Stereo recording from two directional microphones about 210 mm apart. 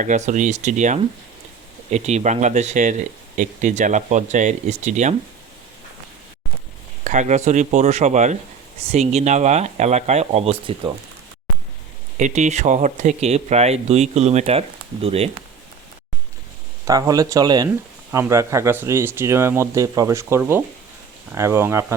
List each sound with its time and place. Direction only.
0.0 s speech: 35° right (ahead or behind)
7.0 s speech: 35° right (ahead or behind)
12.2 s speech: 35° right (ahead or behind)
16.8 s speech: 15° right (ahead or behind)